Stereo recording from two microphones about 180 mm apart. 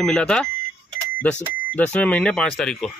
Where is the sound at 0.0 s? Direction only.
5° left (ahead or behind).